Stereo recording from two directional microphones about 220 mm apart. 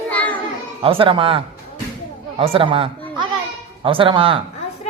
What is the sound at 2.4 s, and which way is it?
Speech, 25° right (ahead or behind).